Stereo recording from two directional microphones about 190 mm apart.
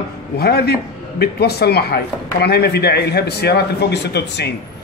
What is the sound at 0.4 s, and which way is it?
Speech, 55° left (ahead or behind).